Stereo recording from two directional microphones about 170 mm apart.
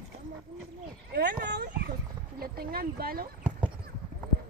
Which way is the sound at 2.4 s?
60° right (ahead or behind).